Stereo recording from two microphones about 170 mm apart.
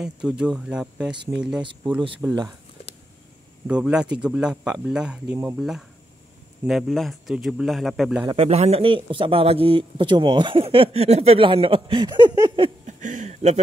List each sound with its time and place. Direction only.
0.0 s speech: 5° right (ahead or behind)
2.2 s speech: 10° right (ahead or behind)
3.6 s speech: 5° right (ahead or behind)
8.3 s a man's voice: 35° right (ahead or behind)
12.8 s a sound: 45° right (ahead or behind)